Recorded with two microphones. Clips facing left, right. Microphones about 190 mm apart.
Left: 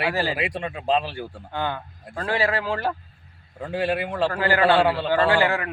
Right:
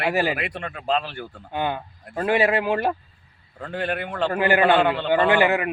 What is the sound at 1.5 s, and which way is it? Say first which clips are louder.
A man's voice: right 3 dB; 20° right (ahead or behind).